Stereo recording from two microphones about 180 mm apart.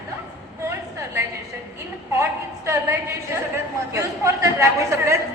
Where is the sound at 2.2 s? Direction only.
15° right (ahead or behind).